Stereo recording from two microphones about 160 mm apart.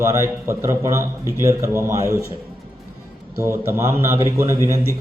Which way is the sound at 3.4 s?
15° right (ahead or behind).